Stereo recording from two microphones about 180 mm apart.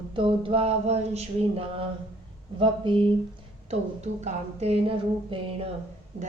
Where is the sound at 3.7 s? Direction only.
40° right (ahead or behind).